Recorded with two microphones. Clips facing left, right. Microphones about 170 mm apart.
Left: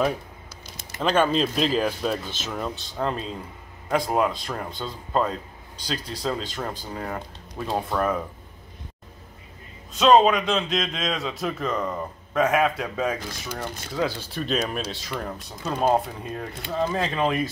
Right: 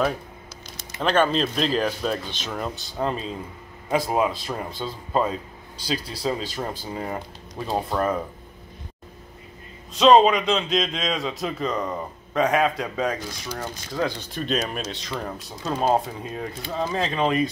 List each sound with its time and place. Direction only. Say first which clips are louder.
1.0 s speech: even; 5° left (ahead or behind); by 8.2 s 10° right (ahead or behind)
9.9 s speech: right 2 dB; centre (ahead or behind)